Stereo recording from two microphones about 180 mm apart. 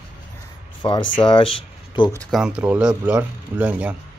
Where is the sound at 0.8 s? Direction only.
25° left (ahead or behind).